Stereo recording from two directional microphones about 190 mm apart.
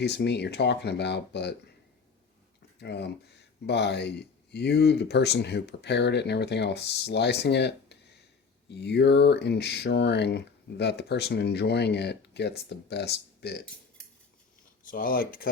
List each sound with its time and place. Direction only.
0.0 s speech: 60° left (ahead or behind)
2.8 s speech: 60° left (ahead or behind)
14.8 s speech: 50° left (ahead or behind)